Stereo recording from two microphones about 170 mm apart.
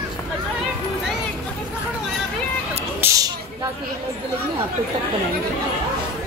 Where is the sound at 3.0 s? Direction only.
20° right (ahead or behind).